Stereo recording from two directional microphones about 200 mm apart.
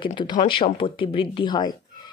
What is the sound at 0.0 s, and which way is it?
Speech, 25° left (ahead or behind).